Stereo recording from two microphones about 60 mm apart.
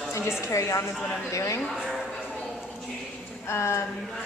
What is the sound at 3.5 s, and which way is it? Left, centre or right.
Speech, left.